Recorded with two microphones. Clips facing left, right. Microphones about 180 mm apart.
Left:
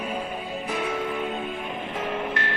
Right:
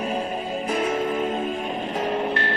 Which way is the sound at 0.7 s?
45° right (ahead or behind).